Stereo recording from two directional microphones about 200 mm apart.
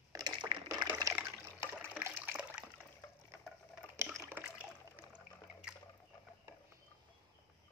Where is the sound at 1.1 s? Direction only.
10° right (ahead or behind).